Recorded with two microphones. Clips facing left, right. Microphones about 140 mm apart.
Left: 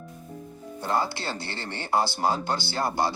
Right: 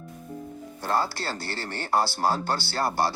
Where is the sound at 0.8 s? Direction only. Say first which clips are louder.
Even; 15° left (ahead or behind).